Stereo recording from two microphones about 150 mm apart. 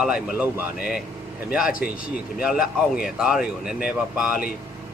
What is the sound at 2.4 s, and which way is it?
A man's voice, 5° right (ahead or behind).